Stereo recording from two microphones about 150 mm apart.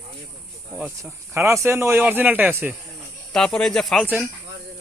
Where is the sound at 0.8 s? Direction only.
10° right (ahead or behind).